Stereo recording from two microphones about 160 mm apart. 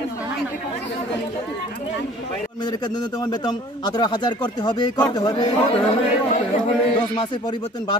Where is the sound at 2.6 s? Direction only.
30° left (ahead or behind).